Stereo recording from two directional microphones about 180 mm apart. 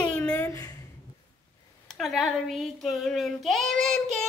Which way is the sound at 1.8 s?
Centre (ahead or behind).